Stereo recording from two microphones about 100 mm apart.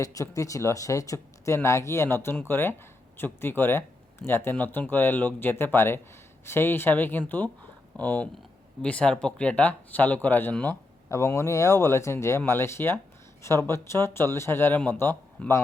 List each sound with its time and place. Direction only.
0.0 s speech: 35° left (ahead or behind); by 10.8 s 15° left (ahead or behind)
11.1 s speech: 25° left (ahead or behind)
15.4 s speech: 10° left (ahead or behind)